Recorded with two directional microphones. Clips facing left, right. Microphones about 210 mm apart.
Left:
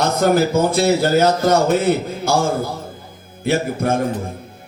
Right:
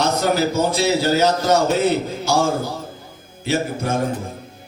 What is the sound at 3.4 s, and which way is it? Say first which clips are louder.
Music: left 3 dB; 55° left (ahead or behind).